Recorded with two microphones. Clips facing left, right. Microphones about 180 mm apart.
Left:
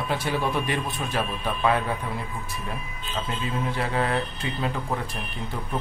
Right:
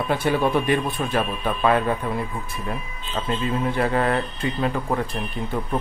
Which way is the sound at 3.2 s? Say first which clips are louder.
Right 5 dB; 60° right (ahead or behind).